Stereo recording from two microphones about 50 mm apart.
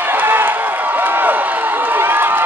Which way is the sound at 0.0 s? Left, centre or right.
Right.